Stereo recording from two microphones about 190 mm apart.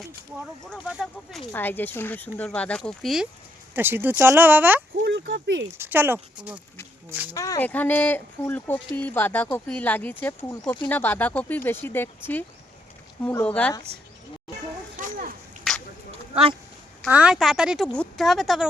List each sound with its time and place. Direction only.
0.7 s speech: centre (ahead or behind)
1.5 s speech: 10° left (ahead or behind)
3.8 s speech: 10° right (ahead or behind)
5.0 s speech: 65° right (ahead or behind)
5.6 s speech: 15° right (ahead or behind)
7.3 s speech: 15° left (ahead or behind)
14.9 s a sound: 45° right (ahead or behind)
15.7 s a sound: centre (ahead or behind)
17.1 s speech: 5° right (ahead or behind)